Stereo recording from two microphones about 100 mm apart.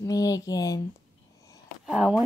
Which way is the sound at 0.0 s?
35° left (ahead or behind).